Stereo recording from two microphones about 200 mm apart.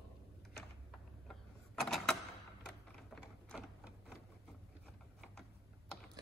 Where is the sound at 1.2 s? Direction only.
Centre (ahead or behind).